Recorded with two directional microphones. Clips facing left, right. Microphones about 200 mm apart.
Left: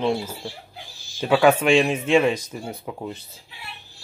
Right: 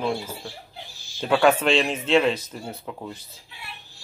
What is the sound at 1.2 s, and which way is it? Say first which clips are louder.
Speech: left 2 dB; 5° left (ahead or behind).